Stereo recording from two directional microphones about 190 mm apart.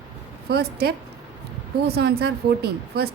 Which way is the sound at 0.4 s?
55° right (ahead or behind).